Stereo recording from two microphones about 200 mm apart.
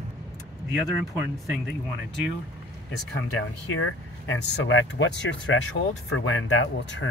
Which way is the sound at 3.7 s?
80° left.